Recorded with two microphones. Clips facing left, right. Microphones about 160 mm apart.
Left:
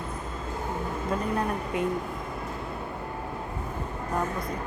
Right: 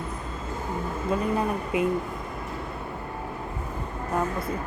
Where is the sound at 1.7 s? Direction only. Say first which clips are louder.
Right 4 dB; 5° right (ahead or behind).